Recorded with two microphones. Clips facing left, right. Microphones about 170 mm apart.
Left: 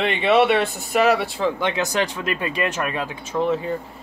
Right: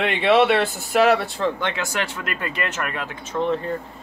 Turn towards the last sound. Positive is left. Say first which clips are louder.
# left 1 dB
turn(degrees=5)  # may be behind; listen again after turning